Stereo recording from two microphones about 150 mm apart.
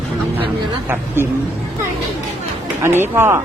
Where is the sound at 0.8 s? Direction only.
15° right (ahead or behind).